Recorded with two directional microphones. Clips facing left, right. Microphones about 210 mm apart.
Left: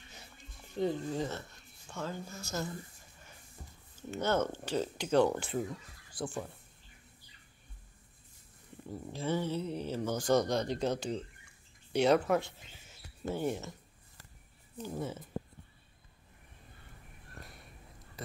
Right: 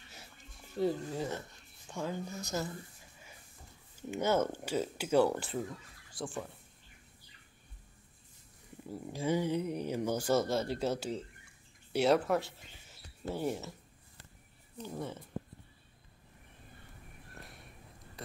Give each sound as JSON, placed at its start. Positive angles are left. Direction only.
{"t": 0.7, "sound": "speech", "side_deg": -5}
{"t": 4.1, "sound": "speech", "side_deg": -10}
{"t": 9.0, "sound": "speech", "side_deg": -10}
{"t": 14.8, "sound": "speech", "side_deg": 5}
{"t": 17.4, "sound": "a sound", "side_deg": 0}